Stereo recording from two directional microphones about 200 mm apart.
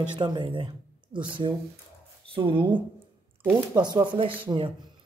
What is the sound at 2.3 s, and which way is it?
Speech, 25° right (ahead or behind).